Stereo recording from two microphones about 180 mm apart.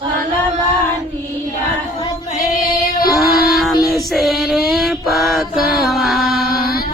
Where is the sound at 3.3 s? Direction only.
Centre (ahead or behind).